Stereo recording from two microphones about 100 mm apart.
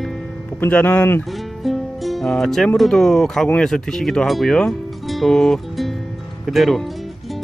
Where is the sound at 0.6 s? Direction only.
20° left (ahead or behind).